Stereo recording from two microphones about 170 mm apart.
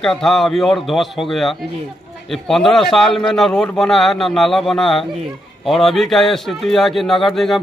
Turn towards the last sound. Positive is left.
turn(degrees=0)  # may be behind; listen again after turning